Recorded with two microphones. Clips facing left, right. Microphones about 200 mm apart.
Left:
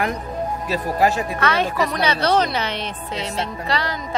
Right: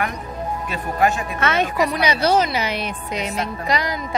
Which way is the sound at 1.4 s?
20° right (ahead or behind).